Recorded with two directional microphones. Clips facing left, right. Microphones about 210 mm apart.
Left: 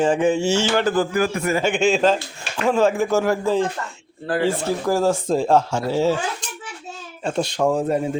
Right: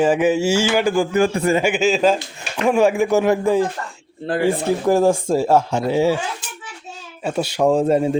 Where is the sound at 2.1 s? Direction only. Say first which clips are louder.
Right 2 dB; 15° right (ahead or behind).